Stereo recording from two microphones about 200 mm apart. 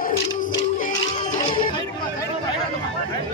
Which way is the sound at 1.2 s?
25° left (ahead or behind).